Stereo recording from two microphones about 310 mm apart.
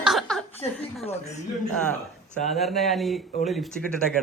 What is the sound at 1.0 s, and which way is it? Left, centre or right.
Speech, left.